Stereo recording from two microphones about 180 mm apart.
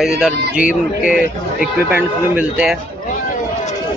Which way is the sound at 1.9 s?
5° right (ahead or behind).